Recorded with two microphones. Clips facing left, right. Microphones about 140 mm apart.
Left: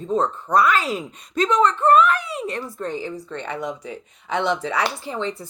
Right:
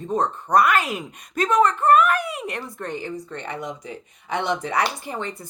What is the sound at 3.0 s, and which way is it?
Speech, 20° right (ahead or behind).